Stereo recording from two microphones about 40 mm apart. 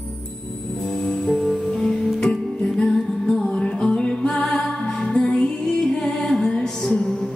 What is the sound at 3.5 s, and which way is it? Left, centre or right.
Music, left.